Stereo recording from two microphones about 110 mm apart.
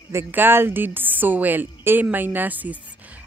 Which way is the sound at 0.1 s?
20° right (ahead or behind).